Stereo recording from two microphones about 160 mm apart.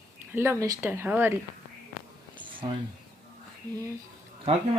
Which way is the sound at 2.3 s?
30° right (ahead or behind).